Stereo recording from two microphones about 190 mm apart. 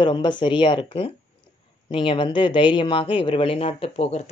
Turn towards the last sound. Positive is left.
turn(degrees=30)  # may be behind; listen again after turning